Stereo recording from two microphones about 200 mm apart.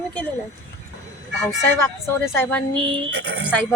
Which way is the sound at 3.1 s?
55° right (ahead or behind).